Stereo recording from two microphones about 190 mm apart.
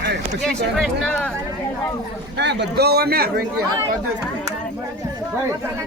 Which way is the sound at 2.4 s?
65° right (ahead or behind).